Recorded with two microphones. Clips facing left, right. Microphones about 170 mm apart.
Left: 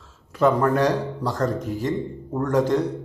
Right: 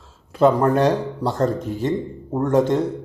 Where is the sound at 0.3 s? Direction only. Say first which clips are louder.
Right 3 dB; 30° right (ahead or behind).